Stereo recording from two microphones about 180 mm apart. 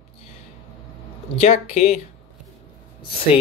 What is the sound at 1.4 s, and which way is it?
Speech, 35° left (ahead or behind).